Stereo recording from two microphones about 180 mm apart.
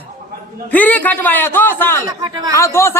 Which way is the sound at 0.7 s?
10° left (ahead or behind).